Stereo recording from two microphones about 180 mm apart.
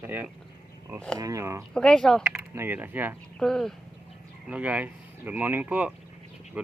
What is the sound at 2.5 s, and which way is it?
Speech, 10° right (ahead or behind).